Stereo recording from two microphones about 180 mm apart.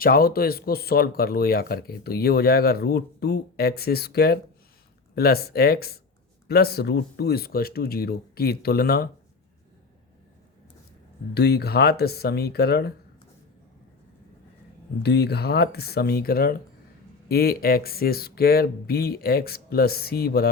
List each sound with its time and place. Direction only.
0.0 s speech: 55° left (ahead or behind)
11.3 s speech: 65° left (ahead or behind)
15.0 s speech: 65° left (ahead or behind)